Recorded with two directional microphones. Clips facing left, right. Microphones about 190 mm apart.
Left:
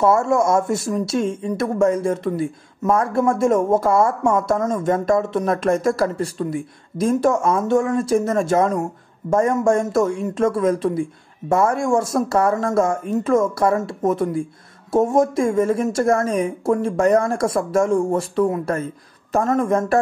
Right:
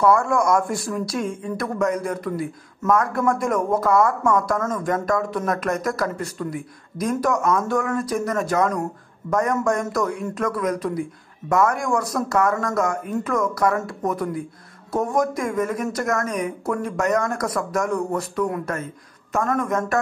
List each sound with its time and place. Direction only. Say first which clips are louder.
0.0 s speech: left 2 dB; 25° left (ahead or behind)